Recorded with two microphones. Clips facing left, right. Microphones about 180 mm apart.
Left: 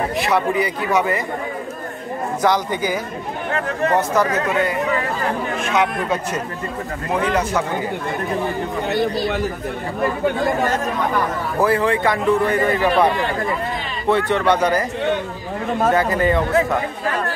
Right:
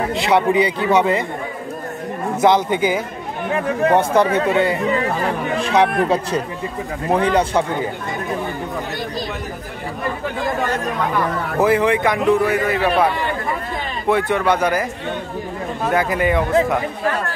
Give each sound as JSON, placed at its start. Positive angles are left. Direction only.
{"t": 0.1, "sound": "a man's voice", "side_deg": -25}
{"t": 2.4, "sound": "a man's voice", "side_deg": -25}
{"t": 3.5, "sound": "a man's voice", "side_deg": -10}
{"t": 4.1, "sound": "a man's voice", "side_deg": -30}
{"t": 11.6, "sound": "a man's voice", "side_deg": -15}
{"t": 14.0, "sound": "a man's voice", "side_deg": -10}
{"t": 15.9, "sound": "a man's voice", "side_deg": -10}